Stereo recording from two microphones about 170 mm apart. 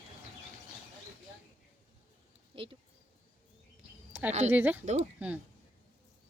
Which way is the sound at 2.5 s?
30° right (ahead or behind).